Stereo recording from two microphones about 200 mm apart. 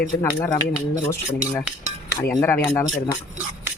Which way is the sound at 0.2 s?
15° left (ahead or behind).